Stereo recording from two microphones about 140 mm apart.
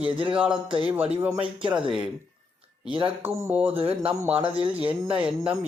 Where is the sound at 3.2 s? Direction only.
15° right (ahead or behind).